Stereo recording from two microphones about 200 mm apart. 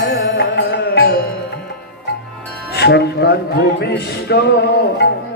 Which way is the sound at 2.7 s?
55° left (ahead or behind).